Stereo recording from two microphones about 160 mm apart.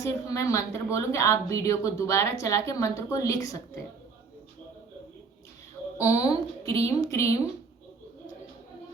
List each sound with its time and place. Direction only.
0.0 s a woman's voice: 20° left (ahead or behind)
6.0 s a woman's voice: 20° left (ahead or behind)